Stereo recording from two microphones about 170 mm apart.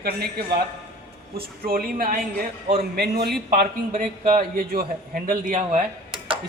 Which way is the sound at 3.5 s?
55° right (ahead or behind).